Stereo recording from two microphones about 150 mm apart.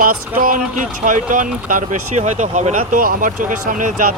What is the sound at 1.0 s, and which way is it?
Speech, 60° right (ahead or behind).